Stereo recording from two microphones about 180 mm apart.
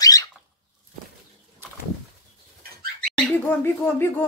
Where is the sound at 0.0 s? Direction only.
20° left (ahead or behind).